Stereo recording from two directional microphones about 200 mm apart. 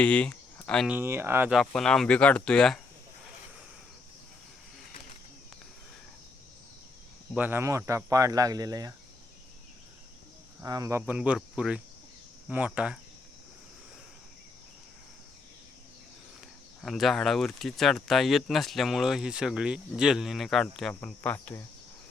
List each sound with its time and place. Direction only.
0.0 s speech: 5° left (ahead or behind)
0.9 s speech: 10° right (ahead or behind)
1.5 s speech: 5° left (ahead or behind)
7.3 s speech: 10° right (ahead or behind)
10.6 s speech: 15° right (ahead or behind)
16.8 s speech: centre (ahead or behind)